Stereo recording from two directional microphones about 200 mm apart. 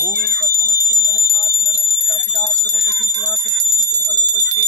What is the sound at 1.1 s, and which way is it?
Alarm, 30° left (ahead or behind).